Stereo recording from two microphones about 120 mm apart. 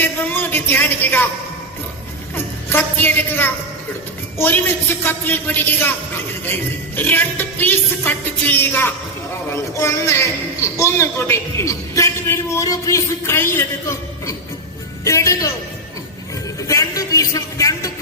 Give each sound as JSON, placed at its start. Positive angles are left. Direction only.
{"t": 0.0, "sound": "speech", "side_deg": 15}
{"t": 2.3, "sound": "a woman's voice", "side_deg": 15}
{"t": 15.0, "sound": "a man's voice", "side_deg": 25}
{"t": 16.6, "sound": "speech", "side_deg": 25}